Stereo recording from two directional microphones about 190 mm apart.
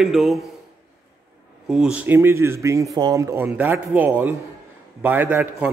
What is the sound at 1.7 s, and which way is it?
A man's voice, 5° right (ahead or behind).